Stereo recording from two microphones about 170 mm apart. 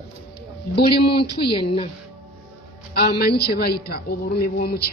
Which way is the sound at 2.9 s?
65° left (ahead or behind).